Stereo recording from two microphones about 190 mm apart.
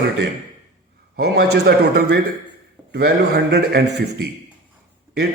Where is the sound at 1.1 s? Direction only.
60° right (ahead or behind).